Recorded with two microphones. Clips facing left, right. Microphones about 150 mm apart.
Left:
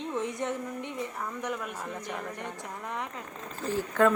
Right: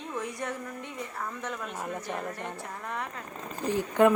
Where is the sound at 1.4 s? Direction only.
15° left (ahead or behind).